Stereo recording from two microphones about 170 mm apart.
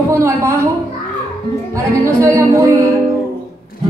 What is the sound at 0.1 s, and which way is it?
Speech, 15° right (ahead or behind).